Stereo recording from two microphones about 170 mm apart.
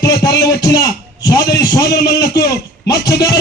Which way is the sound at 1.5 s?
20° left (ahead or behind).